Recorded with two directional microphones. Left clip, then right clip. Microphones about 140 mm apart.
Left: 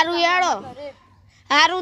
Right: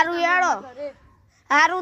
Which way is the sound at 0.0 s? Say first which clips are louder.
Left 1 dB; 15° left (ahead or behind).